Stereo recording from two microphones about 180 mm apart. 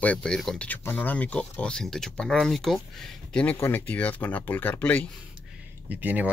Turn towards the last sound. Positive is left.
turn(degrees=-10)  # may be behind; listen again after turning